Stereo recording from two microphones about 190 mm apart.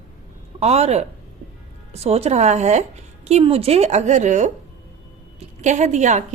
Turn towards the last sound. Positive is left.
turn(degrees=-40)  # may be behind; listen again after turning